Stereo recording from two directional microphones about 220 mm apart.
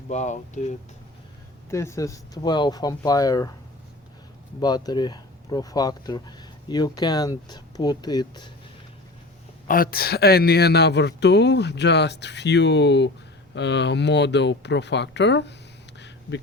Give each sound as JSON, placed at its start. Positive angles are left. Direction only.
{"t": 0.1, "sound": "speech", "side_deg": 35}
{"t": 1.7, "sound": "speech", "side_deg": 10}
{"t": 4.6, "sound": "speech", "side_deg": 20}
{"t": 9.6, "sound": "speech", "side_deg": 40}
{"t": 16.0, "sound": "a sound", "side_deg": 50}